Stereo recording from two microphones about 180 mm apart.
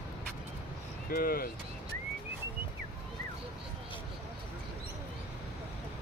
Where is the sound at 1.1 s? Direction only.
55° left (ahead or behind).